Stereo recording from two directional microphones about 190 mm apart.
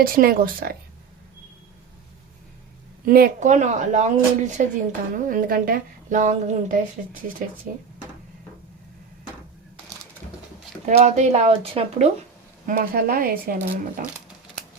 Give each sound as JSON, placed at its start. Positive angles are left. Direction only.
{"t": 0.0, "sound": "speech", "side_deg": -50}
{"t": 3.1, "sound": "speech", "side_deg": -50}
{"t": 10.8, "sound": "speech", "side_deg": -35}
{"t": 12.6, "sound": "speech", "side_deg": -50}